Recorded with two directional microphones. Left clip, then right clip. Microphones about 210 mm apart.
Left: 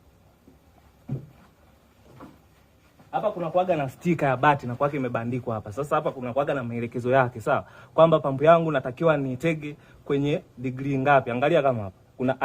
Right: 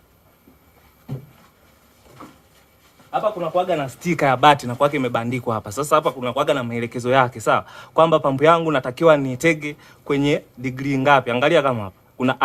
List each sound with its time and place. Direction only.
3.1 s speech: 5° right (ahead or behind); by 12.4 s 25° right (ahead or behind)